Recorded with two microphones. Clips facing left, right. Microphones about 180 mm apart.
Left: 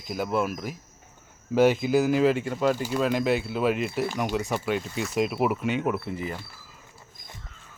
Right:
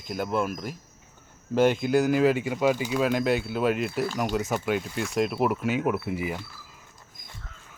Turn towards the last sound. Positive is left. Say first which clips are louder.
# right 2 dB
turn(degrees=-10)  # may be behind; listen again after turning